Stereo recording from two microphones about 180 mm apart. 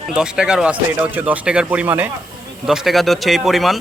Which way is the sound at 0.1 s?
5° right (ahead or behind).